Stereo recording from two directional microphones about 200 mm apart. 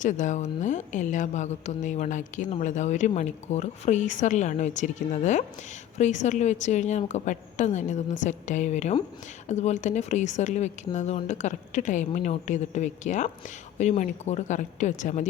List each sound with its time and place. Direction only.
0.0 s speech: 40° left (ahead or behind)